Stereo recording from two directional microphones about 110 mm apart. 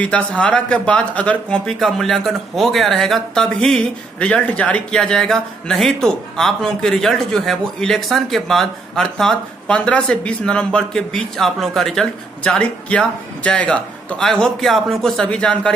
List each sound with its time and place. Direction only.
0.0 s a man's voice: 10° left (ahead or behind)